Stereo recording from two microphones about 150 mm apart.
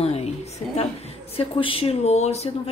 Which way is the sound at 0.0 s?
45° left (ahead or behind).